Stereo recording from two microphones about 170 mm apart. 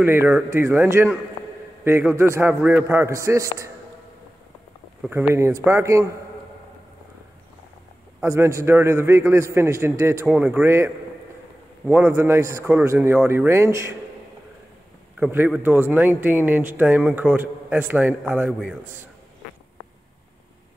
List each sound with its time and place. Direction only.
0.0 s a man's voice: 10° right (ahead or behind)
5.0 s a man's voice: 5° right (ahead or behind)
5.3 s a man's voice: 15° right (ahead or behind)
8.2 s a man's voice: 15° right (ahead or behind)
15.1 s a man's voice: 10° right (ahead or behind)